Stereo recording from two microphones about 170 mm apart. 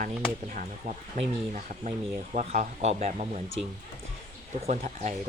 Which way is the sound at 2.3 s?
45° right (ahead or behind).